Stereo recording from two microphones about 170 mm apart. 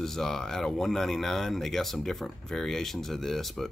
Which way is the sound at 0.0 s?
Centre (ahead or behind).